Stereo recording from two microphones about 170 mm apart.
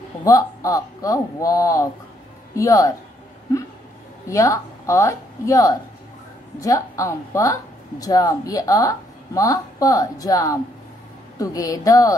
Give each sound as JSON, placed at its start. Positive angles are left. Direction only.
{"t": 0.2, "sound": "a woman's voice", "side_deg": 20}
{"t": 4.3, "sound": "a woman's voice", "side_deg": 20}